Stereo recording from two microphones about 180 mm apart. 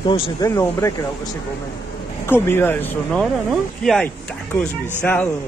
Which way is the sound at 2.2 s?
10° left (ahead or behind).